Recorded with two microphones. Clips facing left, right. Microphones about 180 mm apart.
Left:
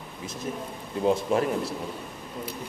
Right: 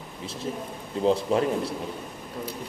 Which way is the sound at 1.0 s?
30° right (ahead or behind).